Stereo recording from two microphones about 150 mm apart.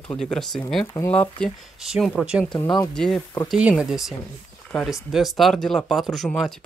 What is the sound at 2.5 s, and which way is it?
Speech, 25° left (ahead or behind).